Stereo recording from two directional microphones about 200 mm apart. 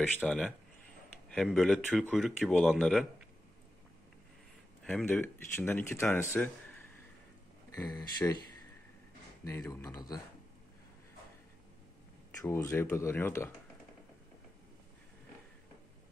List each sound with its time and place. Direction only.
0.0 s speech: centre (ahead or behind)
4.8 s speech: 10° left (ahead or behind)
9.7 s speech: 15° left (ahead or behind)
12.4 s speech: 15° left (ahead or behind)